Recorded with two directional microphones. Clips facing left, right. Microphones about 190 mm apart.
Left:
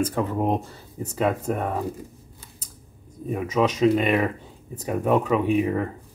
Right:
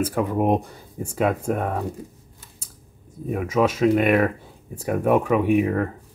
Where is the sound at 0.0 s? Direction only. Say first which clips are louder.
Right 2 dB; 10° right (ahead or behind).